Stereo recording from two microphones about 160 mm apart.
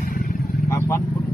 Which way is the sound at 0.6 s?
20° left (ahead or behind).